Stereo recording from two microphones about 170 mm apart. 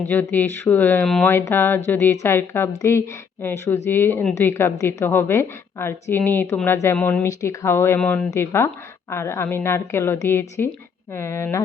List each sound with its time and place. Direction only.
0.0 s a woman's voice: 10° left (ahead or behind)